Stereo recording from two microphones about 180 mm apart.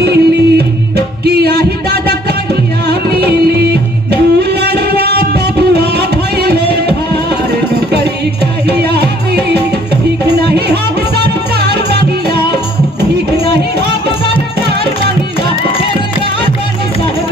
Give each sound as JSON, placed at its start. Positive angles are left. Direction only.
{"t": 0.0, "sound": "music", "side_deg": -65}
{"t": 4.4, "sound": "music", "side_deg": -65}
{"t": 8.8, "sound": "music", "side_deg": -65}